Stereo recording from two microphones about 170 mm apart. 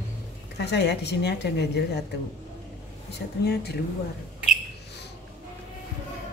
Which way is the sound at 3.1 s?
70° left (ahead or behind).